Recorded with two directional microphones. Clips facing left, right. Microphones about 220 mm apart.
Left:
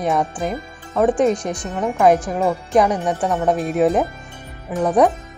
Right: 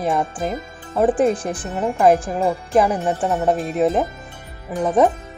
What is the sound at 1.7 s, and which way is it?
Speech, 5° right (ahead or behind).